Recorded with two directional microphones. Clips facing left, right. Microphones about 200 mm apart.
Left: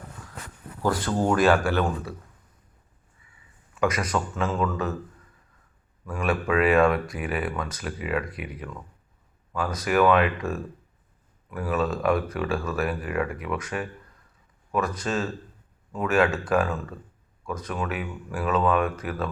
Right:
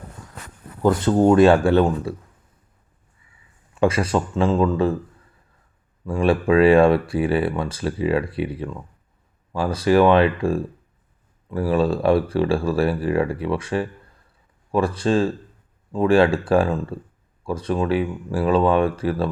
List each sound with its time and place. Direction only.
0.8 s speech: 20° right (ahead or behind)
3.8 s speech: 30° right (ahead or behind)
6.1 s speech: 30° right (ahead or behind)